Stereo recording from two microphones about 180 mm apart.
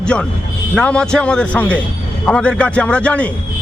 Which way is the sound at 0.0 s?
5° left (ahead or behind).